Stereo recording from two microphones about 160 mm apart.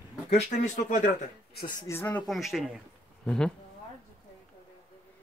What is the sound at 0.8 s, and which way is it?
Speech, 55° left (ahead or behind).